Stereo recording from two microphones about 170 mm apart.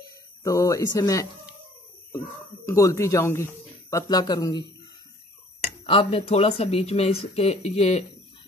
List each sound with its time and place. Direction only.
0.4 s speech: 20° left (ahead or behind)
2.6 s speech: 15° left (ahead or behind)
5.9 s speech: 35° left (ahead or behind)